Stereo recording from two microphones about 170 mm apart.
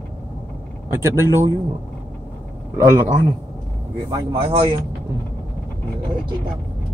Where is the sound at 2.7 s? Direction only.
15° right (ahead or behind).